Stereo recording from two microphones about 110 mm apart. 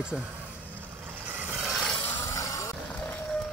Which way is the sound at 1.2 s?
15° right (ahead or behind).